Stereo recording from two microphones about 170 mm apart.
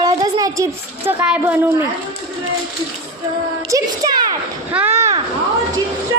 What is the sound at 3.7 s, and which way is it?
Speech, 20° right (ahead or behind).